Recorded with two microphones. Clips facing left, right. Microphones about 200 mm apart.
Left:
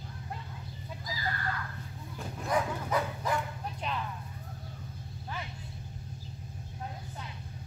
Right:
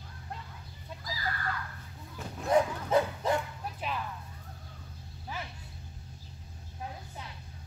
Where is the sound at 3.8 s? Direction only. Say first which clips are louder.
Even; 5° right (ahead or behind).